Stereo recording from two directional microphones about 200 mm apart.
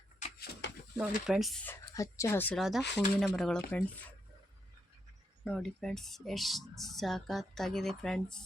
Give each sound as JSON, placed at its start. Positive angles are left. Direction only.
{"t": 0.6, "sound": "a sound", "side_deg": 60}
{"t": 0.9, "sound": "speech", "side_deg": 0}
{"t": 5.5, "sound": "speech", "side_deg": 0}